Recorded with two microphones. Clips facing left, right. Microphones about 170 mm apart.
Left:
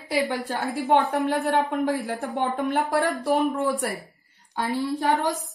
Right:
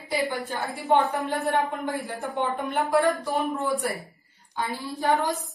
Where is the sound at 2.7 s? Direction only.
65° left (ahead or behind).